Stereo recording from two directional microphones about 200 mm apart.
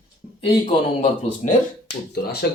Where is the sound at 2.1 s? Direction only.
55° left (ahead or behind).